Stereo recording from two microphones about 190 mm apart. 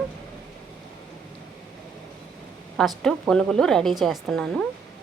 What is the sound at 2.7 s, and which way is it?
A woman's voice, 5° left (ahead or behind).